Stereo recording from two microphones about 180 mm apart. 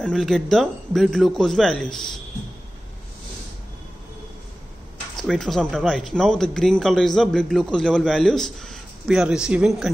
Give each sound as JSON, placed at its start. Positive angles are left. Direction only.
{"t": 0.0, "sound": "speech", "side_deg": 5}
{"t": 5.1, "sound": "speech", "side_deg": 0}